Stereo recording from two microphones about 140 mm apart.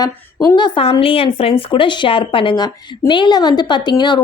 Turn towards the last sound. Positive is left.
turn(degrees=35)  # may be behind; listen again after turning